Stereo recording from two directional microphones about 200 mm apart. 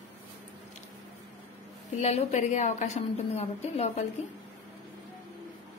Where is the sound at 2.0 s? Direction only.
30° left (ahead or behind).